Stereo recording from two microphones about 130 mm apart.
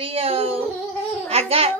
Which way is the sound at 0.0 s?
50° right (ahead or behind).